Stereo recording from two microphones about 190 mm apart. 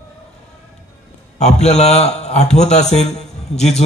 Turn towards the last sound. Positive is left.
turn(degrees=35)  # may be behind; listen again after turning